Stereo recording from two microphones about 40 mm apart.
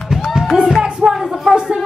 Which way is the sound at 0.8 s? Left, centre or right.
Centre.